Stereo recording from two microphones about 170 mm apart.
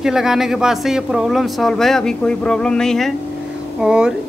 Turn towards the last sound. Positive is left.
turn(degrees=-5)  # may be behind; listen again after turning